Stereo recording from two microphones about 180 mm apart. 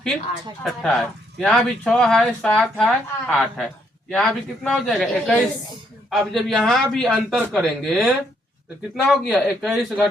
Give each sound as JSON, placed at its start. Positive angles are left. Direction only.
{"t": 0.6, "sound": "speech", "side_deg": 0}